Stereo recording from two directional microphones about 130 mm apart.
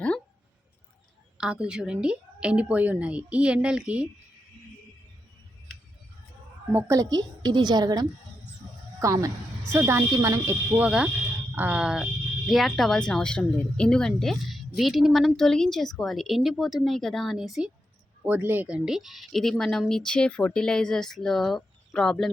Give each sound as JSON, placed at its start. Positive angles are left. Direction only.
{"t": 1.4, "sound": "a woman's voice", "side_deg": -5}
{"t": 6.7, "sound": "a woman's voice", "side_deg": -25}
{"t": 10.8, "sound": "a woman's voice", "side_deg": -10}